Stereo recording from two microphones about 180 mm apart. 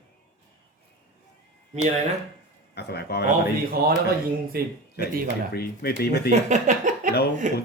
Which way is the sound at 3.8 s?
60° right (ahead or behind).